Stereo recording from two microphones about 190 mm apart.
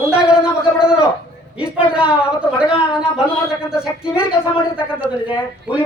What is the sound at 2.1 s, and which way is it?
Speech, 5° right (ahead or behind).